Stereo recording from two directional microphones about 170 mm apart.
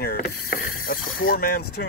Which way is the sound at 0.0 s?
65° left (ahead or behind).